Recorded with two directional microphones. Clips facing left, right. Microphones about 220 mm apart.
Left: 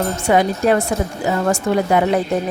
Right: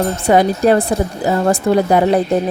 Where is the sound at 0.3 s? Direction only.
35° right (ahead or behind).